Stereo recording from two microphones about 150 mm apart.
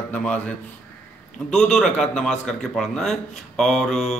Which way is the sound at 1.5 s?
5° left (ahead or behind).